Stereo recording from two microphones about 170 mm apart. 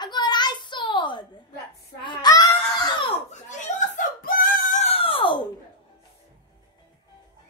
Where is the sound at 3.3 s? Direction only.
45° left (ahead or behind).